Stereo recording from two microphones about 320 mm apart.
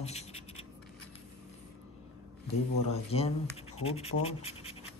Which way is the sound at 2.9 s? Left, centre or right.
Centre.